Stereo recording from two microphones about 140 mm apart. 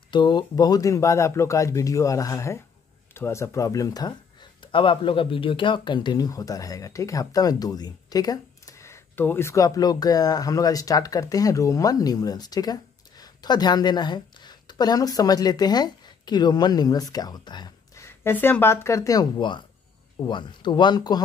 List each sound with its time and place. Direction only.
0.1 s speech: 30° left (ahead or behind)